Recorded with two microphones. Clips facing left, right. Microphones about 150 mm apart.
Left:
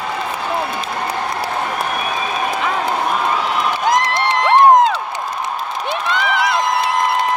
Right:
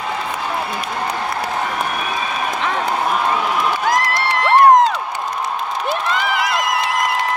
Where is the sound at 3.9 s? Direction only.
20° left (ahead or behind).